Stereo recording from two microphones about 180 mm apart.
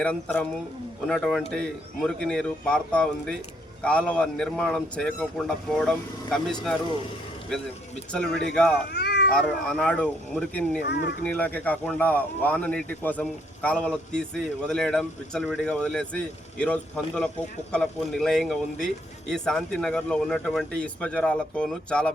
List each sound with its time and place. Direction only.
0.0 s speech: 5° left (ahead or behind)
8.1 s speech: 5° left (ahead or behind)
8.9 s cat: 65° left (ahead or behind)
9.3 s speech: 5° left (ahead or behind)